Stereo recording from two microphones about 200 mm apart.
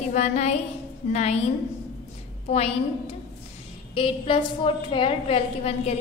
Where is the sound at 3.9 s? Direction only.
25° left (ahead or behind).